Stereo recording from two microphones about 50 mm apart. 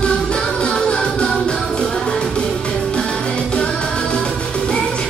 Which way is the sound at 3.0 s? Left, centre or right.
Centre.